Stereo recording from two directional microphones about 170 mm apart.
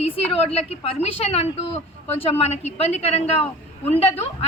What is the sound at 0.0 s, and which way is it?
Speech, 35° left (ahead or behind).